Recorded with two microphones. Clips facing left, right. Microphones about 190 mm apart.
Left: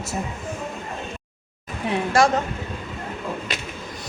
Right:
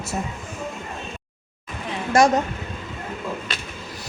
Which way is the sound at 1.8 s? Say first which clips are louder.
Left 7 dB; 65° left (ahead or behind).